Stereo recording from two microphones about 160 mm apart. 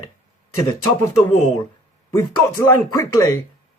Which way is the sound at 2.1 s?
15° left (ahead or behind).